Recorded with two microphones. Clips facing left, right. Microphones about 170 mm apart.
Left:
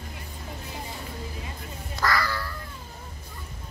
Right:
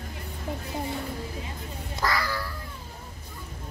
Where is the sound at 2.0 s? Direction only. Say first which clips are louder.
Left 2 dB; 15° right (ahead or behind).